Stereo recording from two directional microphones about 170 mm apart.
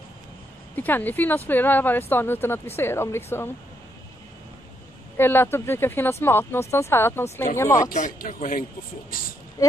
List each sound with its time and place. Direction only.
0.7 s speech: 10° left (ahead or behind)
5.1 s speech: 15° left (ahead or behind)
7.9 s speech: 50° left (ahead or behind)
9.6 s speech: 20° left (ahead or behind)